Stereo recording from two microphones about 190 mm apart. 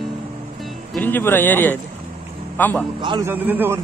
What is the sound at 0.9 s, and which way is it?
A man's voice, 10° left (ahead or behind).